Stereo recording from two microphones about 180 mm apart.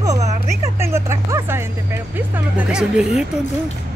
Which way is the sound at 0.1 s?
40° right (ahead or behind).